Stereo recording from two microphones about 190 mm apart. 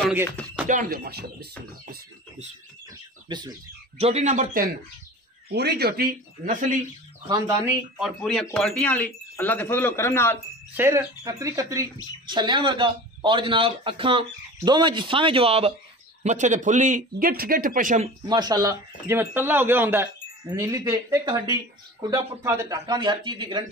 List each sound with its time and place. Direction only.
0.7 s speech: 45° right (ahead or behind)
3.3 s speech: 20° right (ahead or behind)
4.0 s a man's voice: 35° right (ahead or behind)
5.5 s speech: 60° right (ahead or behind); by 6.8 s 45° right (ahead or behind)
7.2 s a woman's voice: 20° right (ahead or behind)
8.0 s speech: 5° left (ahead or behind)
10.8 s a woman's voice: 15° right (ahead or behind); by 18.1 s 40° right (ahead or behind)
18.3 s a woman's voice: 20° right (ahead or behind)